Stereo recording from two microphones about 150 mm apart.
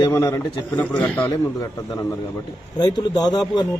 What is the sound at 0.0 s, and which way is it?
A man's voice, 20° left (ahead or behind).